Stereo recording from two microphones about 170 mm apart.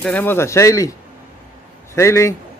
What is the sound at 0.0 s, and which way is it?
Speech, 10° left (ahead or behind).